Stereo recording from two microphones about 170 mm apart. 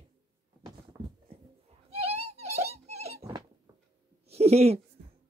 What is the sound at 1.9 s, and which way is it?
Neigh, 35° right (ahead or behind).